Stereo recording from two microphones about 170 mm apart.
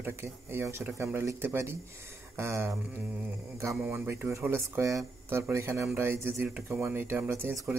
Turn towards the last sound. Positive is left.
turn(degrees=-15)  # may be behind; listen again after turning